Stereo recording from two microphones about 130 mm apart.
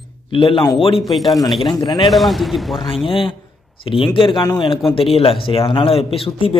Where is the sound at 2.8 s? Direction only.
40° left (ahead or behind).